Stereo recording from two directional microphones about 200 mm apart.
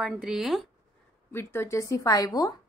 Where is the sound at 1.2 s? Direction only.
10° left (ahead or behind).